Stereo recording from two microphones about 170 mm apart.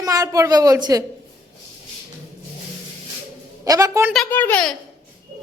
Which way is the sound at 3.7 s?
20° right (ahead or behind).